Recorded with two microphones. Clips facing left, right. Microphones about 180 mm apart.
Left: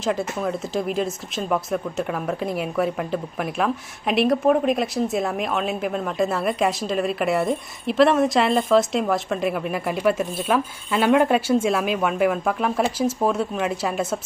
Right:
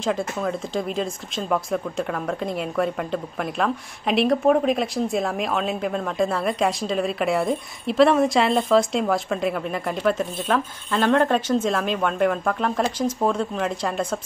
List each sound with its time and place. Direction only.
0.0 s speech: 5° left (ahead or behind)